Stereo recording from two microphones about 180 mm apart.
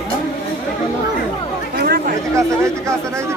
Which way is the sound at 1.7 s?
55° right (ahead or behind).